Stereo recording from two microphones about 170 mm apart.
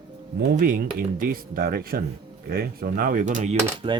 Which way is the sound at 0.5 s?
50° right (ahead or behind).